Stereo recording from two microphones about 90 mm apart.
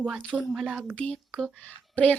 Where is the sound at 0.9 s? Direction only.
10° left (ahead or behind).